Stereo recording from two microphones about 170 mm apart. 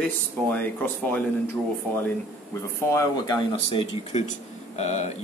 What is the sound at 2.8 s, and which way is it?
Speech, 20° left (ahead or behind).